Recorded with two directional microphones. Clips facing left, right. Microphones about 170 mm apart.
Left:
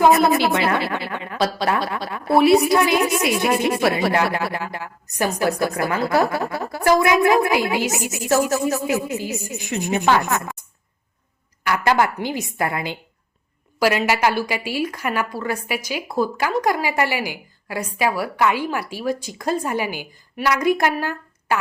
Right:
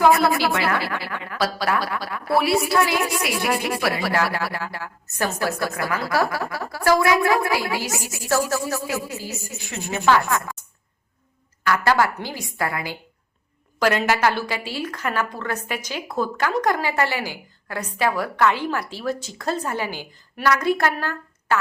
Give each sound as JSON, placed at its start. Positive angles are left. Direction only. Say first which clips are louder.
{"t": 0.0, "sound": "speech", "louder": "left 2 dB", "side_deg": 20}
{"t": 11.6, "sound": "speech", "louder": "left 1 dB", "side_deg": 20}
{"t": 13.7, "sound": "a woman's voice", "louder": "left 1 dB", "side_deg": 10}